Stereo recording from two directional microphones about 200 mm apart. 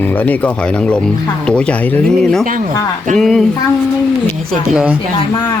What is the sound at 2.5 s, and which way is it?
Speech, 40° right (ahead or behind).